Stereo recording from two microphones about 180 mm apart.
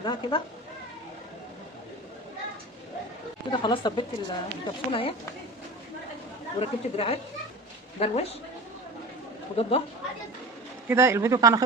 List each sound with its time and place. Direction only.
0.0 s a woman's voice: 25° left (ahead or behind)
3.5 s a woman's voice: 25° left (ahead or behind)
6.6 s a woman's voice: 35° left (ahead or behind)
9.6 s a woman's voice: 30° left (ahead or behind)
10.8 s a man's voice: 15° right (ahead or behind)